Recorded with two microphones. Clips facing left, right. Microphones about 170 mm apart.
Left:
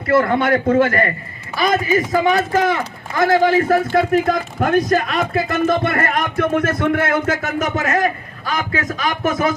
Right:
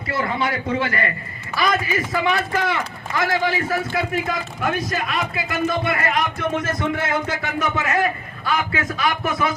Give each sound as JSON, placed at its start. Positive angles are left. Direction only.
{"t": 0.1, "sound": "a man's voice", "side_deg": 55}